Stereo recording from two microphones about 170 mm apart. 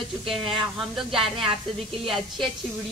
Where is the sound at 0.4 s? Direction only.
30° right (ahead or behind).